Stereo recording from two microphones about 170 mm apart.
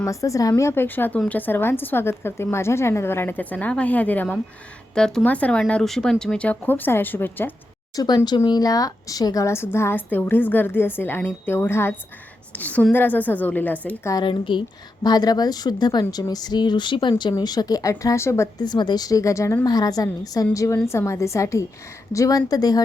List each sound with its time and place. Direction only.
0.0 s speech: 20° left (ahead or behind)
7.9 s speech: 25° left (ahead or behind)
14.1 s speech: 25° left (ahead or behind)